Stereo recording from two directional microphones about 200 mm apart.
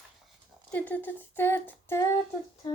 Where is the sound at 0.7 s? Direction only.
10° left (ahead or behind).